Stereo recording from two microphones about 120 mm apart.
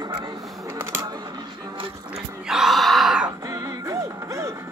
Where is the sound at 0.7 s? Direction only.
20° right (ahead or behind).